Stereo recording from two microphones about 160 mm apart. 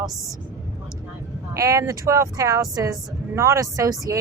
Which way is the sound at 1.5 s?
20° right (ahead or behind).